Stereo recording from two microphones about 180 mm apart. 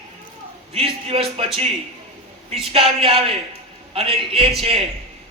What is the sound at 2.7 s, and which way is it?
Speech, 30° right (ahead or behind).